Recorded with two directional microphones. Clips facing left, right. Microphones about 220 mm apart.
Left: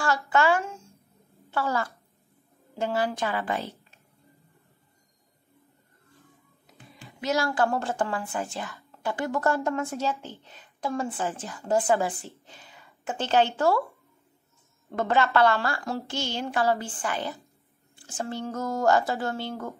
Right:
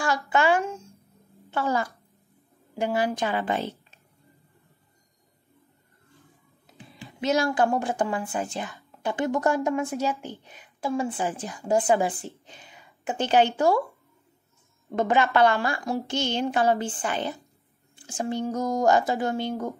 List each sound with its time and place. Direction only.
0.3 s speech: 15° right (ahead or behind)
7.1 s a woman's voice: 25° right (ahead or behind)
14.9 s a woman's voice: 15° right (ahead or behind)